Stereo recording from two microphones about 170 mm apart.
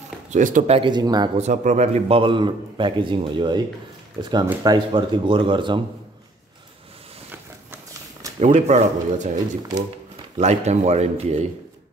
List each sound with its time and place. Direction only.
0.3 s speech: 50° right (ahead or behind)
0.7 s speech: 25° right (ahead or behind)
1.4 s a man's voice: 45° right (ahead or behind); by 5.8 s 30° right (ahead or behind)
8.4 s speech: 40° right (ahead or behind)
10.3 s a man's voice: 40° right (ahead or behind)